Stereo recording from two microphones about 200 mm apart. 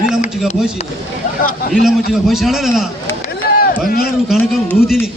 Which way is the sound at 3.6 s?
45° left (ahead or behind).